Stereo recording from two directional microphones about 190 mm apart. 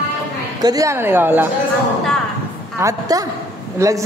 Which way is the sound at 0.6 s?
15° right (ahead or behind).